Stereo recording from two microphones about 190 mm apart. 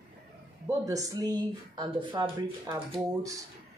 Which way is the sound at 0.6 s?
15° right (ahead or behind).